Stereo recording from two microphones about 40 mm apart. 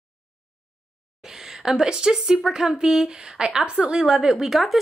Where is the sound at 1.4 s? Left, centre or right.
Centre.